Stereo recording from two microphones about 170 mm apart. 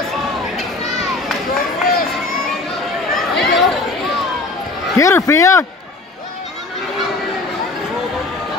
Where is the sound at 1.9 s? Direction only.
60° left (ahead or behind).